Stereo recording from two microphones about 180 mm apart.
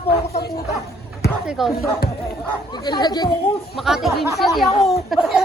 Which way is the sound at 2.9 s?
25° left (ahead or behind).